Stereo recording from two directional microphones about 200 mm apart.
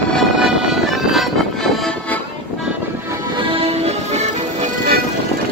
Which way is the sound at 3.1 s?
25° right (ahead or behind).